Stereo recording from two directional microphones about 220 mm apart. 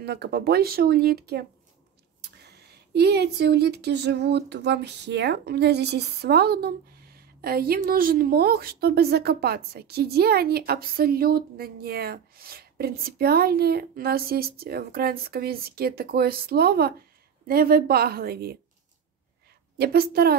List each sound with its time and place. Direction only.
0.0 s speech: 45° right (ahead or behind)
19.8 s speech: 45° right (ahead or behind)